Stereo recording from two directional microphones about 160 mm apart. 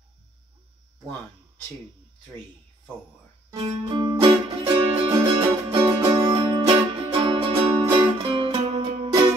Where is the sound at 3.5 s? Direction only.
40° right (ahead or behind).